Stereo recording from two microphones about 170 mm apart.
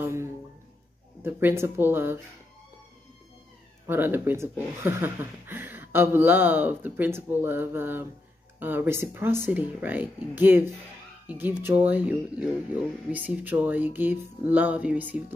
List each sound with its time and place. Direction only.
0.0 s a sound: 15° right (ahead or behind)
1.2 s speech: 15° right (ahead or behind)
3.8 s speech: 10° right (ahead or behind)